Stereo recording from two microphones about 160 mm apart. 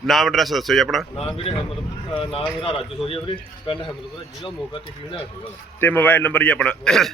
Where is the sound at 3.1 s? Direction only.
35° left (ahead or behind).